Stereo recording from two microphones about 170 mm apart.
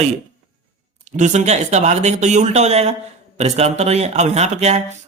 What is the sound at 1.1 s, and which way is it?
A man's voice, 45° right (ahead or behind).